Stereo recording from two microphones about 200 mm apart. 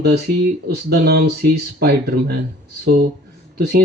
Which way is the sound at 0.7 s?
55° right (ahead or behind).